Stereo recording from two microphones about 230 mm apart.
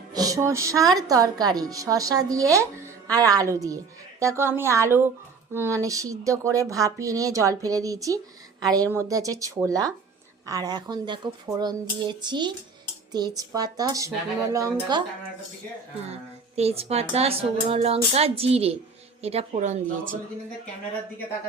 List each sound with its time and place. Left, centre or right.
0.1 s a woman's voice: centre
16.6 s speech: right